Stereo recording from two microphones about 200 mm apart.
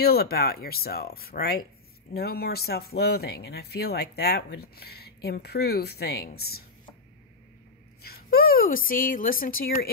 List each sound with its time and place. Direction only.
0.0 s speech: 50° left (ahead or behind)
8.0 s speech: 50° left (ahead or behind)